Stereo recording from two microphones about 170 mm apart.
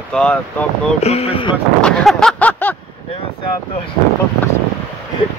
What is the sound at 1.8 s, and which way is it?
Speech, 5° left (ahead or behind).